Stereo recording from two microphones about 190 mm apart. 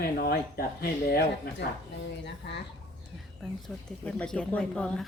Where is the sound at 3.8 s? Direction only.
5° left (ahead or behind).